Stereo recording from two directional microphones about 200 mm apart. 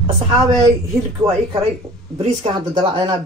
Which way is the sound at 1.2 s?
30° right (ahead or behind).